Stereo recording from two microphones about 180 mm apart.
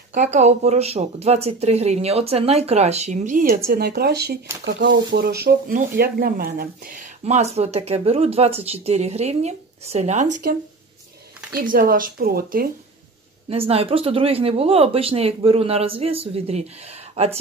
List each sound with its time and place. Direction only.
0.1 s speech: 40° right (ahead or behind); by 4.4 s 60° right (ahead or behind)
4.6 s speech: 80° right; by 10.3 s 40° right (ahead or behind)
11.5 s speech: 50° right (ahead or behind)
13.5 s speech: 35° right (ahead or behind)